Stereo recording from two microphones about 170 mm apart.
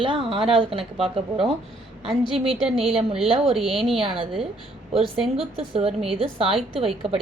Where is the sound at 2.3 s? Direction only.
35° right (ahead or behind).